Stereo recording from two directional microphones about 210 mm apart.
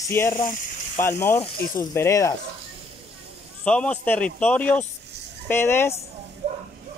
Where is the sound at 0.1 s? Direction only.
10° left (ahead or behind).